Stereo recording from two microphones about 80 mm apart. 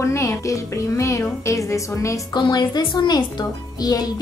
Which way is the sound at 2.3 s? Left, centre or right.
Left.